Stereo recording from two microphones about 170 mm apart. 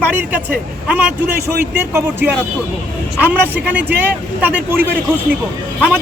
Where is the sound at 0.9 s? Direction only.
10° right (ahead or behind).